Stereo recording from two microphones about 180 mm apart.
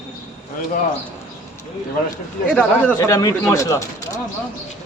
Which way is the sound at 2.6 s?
10° left (ahead or behind).